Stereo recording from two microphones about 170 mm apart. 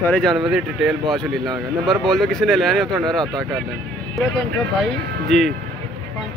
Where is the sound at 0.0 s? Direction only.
5° left (ahead or behind).